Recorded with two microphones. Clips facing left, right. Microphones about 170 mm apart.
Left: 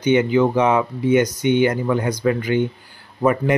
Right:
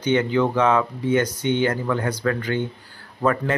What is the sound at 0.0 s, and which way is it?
Speech, 15° left (ahead or behind).